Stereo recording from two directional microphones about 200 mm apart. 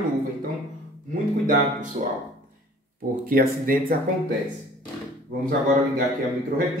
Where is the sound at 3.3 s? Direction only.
45° right (ahead or behind).